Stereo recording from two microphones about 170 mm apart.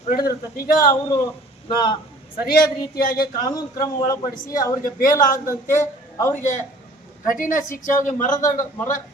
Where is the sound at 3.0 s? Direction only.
60° left (ahead or behind).